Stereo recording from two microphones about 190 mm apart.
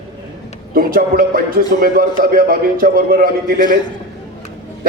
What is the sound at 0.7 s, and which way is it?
A man's voice, 50° right (ahead or behind).